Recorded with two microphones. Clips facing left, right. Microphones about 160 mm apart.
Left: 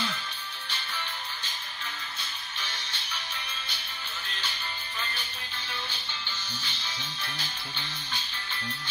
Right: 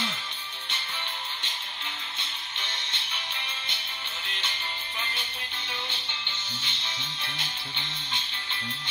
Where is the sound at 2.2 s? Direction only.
25° right (ahead or behind).